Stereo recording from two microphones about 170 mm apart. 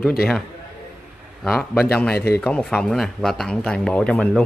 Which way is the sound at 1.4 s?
Centre (ahead or behind).